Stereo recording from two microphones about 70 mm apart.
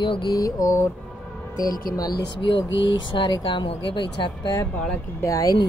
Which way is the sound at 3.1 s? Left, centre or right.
Left.